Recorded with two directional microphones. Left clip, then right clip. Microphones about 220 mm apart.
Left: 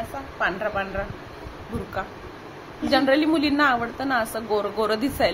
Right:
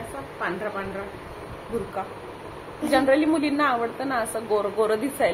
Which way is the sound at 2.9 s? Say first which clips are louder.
Even; 45° left (ahead or behind).